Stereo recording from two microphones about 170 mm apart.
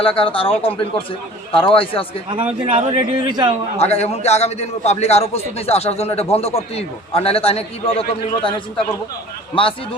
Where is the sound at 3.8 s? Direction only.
40° left (ahead or behind).